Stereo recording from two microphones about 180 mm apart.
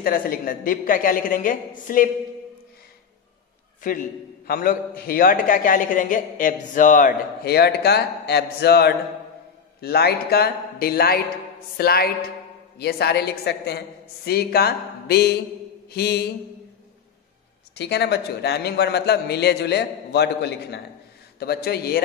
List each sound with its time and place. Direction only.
0.0 s a man's voice: 55° left (ahead or behind)
4.5 s a man's voice: 55° left (ahead or behind)
17.7 s a man's voice: 65° left (ahead or behind)